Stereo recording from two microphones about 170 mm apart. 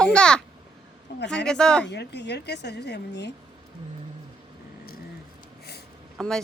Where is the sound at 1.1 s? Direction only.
85° left.